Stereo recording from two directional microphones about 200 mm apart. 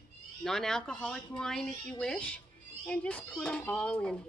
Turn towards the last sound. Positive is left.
turn(degrees=5)  # may be behind; listen again after turning